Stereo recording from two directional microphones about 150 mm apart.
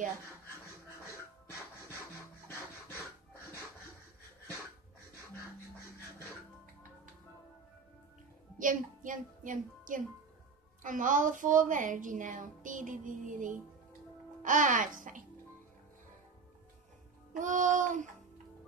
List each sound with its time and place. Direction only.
8.5 s a woman's voice: 60° right (ahead or behind)
17.3 s a woman's voice: 55° right (ahead or behind)